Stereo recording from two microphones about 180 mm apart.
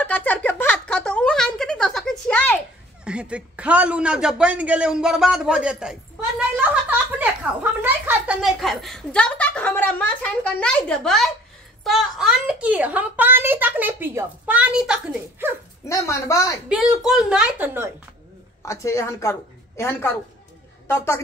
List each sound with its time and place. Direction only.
0.0 s a sound: 10° left (ahead or behind)
3.1 s a man's voice: 5° right (ahead or behind)
6.5 s a sound: 10° right (ahead or behind)
7.8 s a child's voice: 10° right (ahead or behind)
15.8 s speech: 15° left (ahead or behind)
16.6 s a man's voice: 5° right (ahead or behind)
18.7 s a woman's voice: 15° left (ahead or behind)